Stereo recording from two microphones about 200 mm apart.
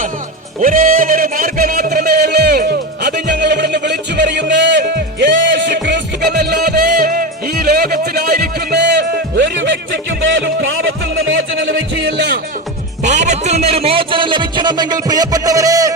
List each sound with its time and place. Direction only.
0.6 s music: 45° right (ahead or behind); by 9.7 s 65° right (ahead or behind)
10.2 s a sound: 70° right (ahead or behind)
12.0 s music: 60° right (ahead or behind)
13.0 s music: 35° right (ahead or behind); by 15.9 s 15° right (ahead or behind)